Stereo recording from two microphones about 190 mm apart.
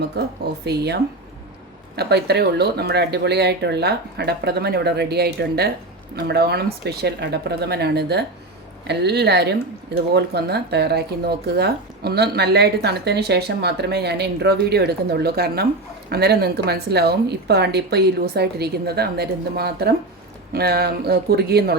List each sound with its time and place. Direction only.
0.2 s speech: 60° right (ahead or behind)
2.0 s speech: 60° right (ahead or behind)